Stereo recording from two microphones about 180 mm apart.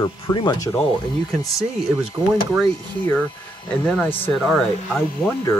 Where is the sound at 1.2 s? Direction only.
Centre (ahead or behind).